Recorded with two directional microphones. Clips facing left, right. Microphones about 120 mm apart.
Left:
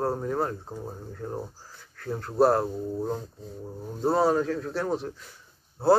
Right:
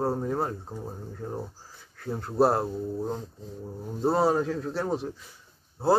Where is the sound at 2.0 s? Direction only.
10° right (ahead or behind).